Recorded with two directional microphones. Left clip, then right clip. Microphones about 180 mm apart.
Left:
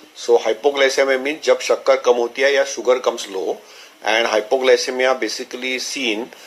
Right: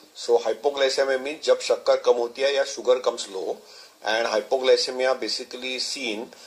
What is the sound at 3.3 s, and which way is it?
Speech, 25° left (ahead or behind).